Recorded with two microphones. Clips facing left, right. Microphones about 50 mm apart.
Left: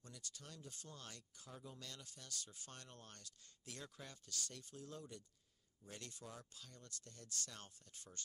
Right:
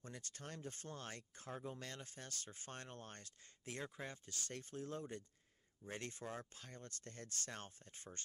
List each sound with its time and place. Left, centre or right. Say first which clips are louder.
0.0 s speech: right 5 dB; right